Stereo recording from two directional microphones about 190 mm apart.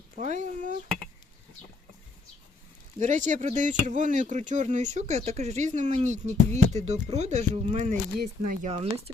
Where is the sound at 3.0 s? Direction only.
40° right (ahead or behind).